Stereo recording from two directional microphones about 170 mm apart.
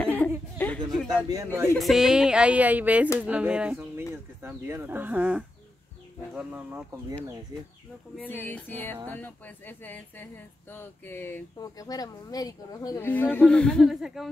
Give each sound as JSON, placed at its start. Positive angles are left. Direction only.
{"t": 0.0, "sound": "chuckle", "side_deg": 10}
{"t": 1.3, "sound": "speech", "side_deg": -15}
{"t": 1.8, "sound": "speech", "side_deg": 0}
{"t": 8.3, "sound": "speech", "side_deg": 10}